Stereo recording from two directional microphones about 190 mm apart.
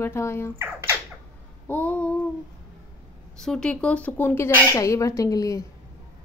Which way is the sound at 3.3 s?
5° left (ahead or behind).